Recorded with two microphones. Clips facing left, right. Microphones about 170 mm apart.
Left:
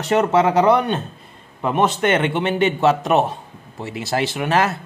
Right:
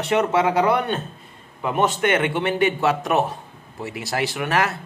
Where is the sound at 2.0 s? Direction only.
30° left (ahead or behind).